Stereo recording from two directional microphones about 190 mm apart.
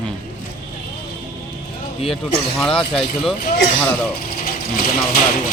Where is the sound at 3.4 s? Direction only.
50° left (ahead or behind).